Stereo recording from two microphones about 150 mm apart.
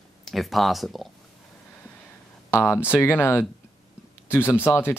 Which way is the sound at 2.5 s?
15° left (ahead or behind).